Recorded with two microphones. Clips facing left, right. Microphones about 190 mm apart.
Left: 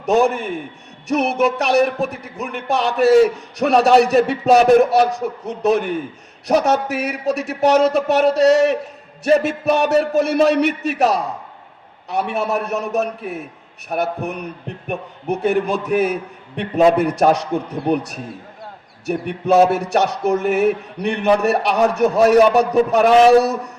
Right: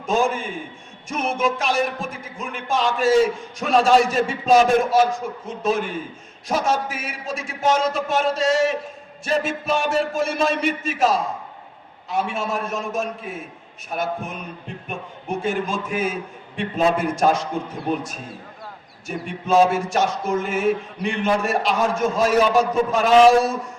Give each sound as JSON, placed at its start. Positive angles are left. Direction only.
{"t": 0.0, "sound": "a man's voice", "side_deg": 70}
{"t": 14.8, "sound": "music", "side_deg": 65}
{"t": 16.6, "sound": "a man's voice", "side_deg": 65}
{"t": 19.0, "sound": "music", "side_deg": 65}